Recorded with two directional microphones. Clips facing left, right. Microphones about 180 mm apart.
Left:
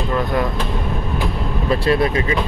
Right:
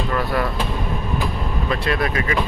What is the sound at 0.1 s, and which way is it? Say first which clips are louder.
Speech: left 4 dB; 20° left (ahead or behind).